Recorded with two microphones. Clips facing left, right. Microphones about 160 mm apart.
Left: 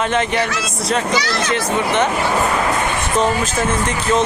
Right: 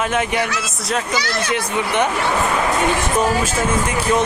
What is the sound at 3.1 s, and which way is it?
Speech, 10° right (ahead or behind).